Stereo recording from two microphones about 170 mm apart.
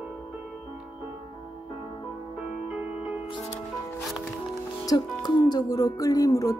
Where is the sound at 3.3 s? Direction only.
35° left (ahead or behind).